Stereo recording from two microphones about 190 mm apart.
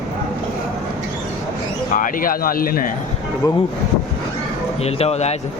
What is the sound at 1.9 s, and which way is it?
Speech, 45° left (ahead or behind).